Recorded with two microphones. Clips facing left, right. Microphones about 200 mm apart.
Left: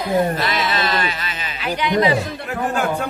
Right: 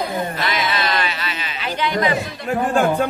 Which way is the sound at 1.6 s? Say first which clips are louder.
Left 2 dB; 15° left (ahead or behind).